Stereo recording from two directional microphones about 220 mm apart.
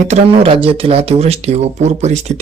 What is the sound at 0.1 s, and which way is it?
Speech, 25° right (ahead or behind).